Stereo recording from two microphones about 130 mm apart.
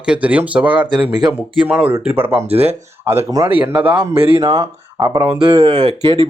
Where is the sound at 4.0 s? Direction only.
45° right (ahead or behind).